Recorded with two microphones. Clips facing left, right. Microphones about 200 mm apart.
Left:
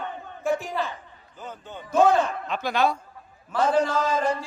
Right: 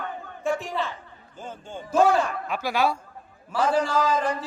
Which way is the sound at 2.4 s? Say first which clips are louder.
Left 1 dB; 10° right (ahead or behind).